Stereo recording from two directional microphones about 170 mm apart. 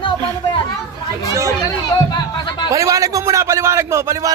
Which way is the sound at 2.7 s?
20° right (ahead or behind).